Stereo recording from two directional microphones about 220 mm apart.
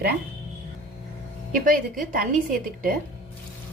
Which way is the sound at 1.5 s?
40° right (ahead or behind).